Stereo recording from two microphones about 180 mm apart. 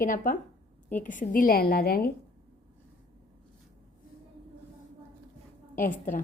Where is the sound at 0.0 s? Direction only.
50° left (ahead or behind).